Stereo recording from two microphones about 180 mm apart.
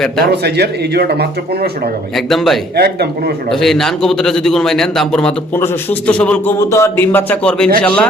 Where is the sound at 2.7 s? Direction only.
65° right (ahead or behind).